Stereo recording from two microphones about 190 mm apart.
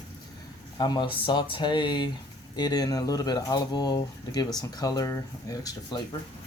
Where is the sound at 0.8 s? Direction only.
25° left (ahead or behind).